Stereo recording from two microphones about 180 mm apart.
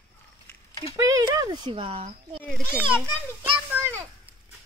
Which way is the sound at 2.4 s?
5° left (ahead or behind).